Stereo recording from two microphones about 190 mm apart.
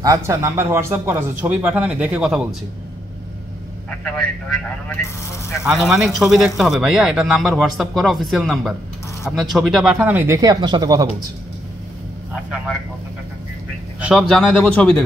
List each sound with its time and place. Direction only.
0.0 s speech: 15° right (ahead or behind)
4.0 s a man's voice: 5° left (ahead or behind); by 11.1 s 20° right (ahead or behind)
13.9 s a man's voice: 5° right (ahead or behind)